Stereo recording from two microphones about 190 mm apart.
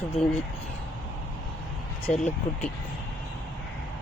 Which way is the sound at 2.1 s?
35° left (ahead or behind).